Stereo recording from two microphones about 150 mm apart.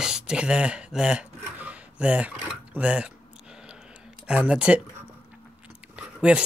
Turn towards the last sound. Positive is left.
turn(degrees=-10)  # may be behind; listen again after turning